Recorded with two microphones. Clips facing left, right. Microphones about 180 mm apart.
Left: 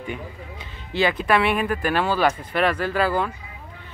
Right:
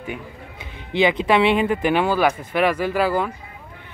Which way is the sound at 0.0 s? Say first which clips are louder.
Even; 10° right (ahead or behind).